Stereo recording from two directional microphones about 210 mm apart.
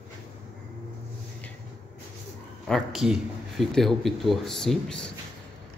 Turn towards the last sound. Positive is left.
turn(degrees=5)  # may be behind; listen again after turning